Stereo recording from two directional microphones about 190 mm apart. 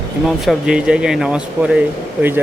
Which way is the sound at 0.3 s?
5° right (ahead or behind).